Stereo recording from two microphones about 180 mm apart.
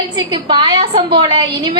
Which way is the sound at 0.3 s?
25° right (ahead or behind).